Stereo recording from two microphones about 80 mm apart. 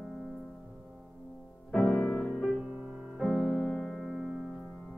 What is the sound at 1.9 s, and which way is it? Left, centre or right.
Music, centre.